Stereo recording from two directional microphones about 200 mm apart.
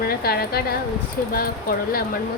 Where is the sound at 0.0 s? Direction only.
50° left (ahead or behind).